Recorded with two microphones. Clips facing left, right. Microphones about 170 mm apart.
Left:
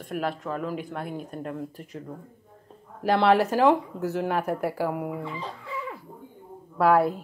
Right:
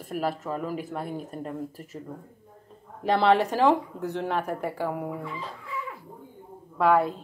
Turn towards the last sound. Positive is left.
turn(degrees=5)  # may be behind; listen again after turning